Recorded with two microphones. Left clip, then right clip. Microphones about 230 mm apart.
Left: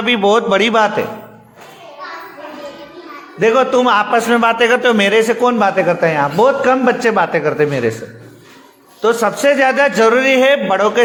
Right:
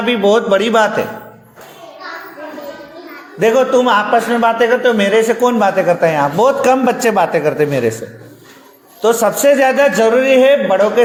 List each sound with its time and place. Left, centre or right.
0.0 s a man's voice: centre
3.4 s a man's voice: centre
4.3 s a man's voice: left